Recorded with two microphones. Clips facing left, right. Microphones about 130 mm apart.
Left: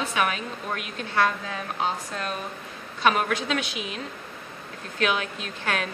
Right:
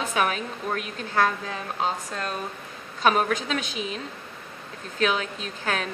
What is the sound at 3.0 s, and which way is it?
A woman's voice, 35° right (ahead or behind).